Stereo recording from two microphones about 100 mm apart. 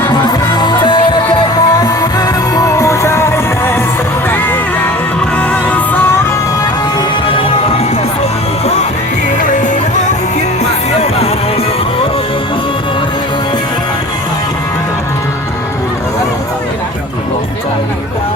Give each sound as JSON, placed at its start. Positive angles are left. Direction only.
{"t": 0.5, "sound": "music", "side_deg": 50}
{"t": 7.3, "sound": "music", "side_deg": 70}